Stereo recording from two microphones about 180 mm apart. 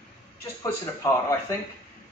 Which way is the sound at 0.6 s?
15° left (ahead or behind).